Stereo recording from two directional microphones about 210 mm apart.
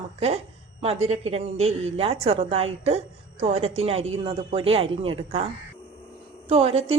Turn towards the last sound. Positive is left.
turn(degrees=-30)  # may be behind; listen again after turning